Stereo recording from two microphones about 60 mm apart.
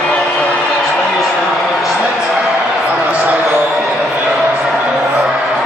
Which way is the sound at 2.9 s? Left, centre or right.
Right.